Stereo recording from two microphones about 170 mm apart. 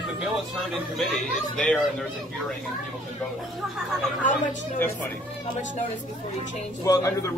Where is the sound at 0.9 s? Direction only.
Centre (ahead or behind).